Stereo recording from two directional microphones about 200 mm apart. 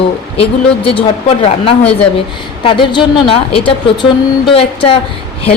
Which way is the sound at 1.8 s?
5° left (ahead or behind).